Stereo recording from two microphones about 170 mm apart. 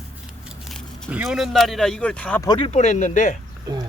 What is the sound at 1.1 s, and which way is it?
Speech, 5° right (ahead or behind).